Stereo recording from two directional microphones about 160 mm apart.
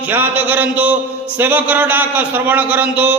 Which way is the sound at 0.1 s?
10° right (ahead or behind).